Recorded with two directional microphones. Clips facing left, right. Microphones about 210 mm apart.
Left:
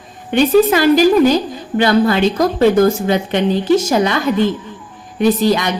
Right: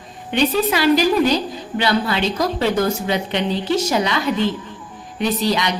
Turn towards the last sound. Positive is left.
turn(degrees=50)  # may be behind; listen again after turning